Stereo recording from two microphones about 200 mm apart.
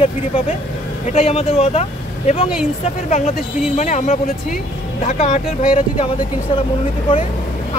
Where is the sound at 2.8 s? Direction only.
35° left (ahead or behind).